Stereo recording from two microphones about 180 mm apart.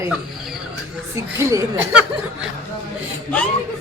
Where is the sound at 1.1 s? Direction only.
15° right (ahead or behind).